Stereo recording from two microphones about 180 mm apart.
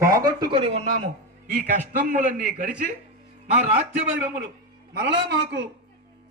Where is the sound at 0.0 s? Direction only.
20° right (ahead or behind).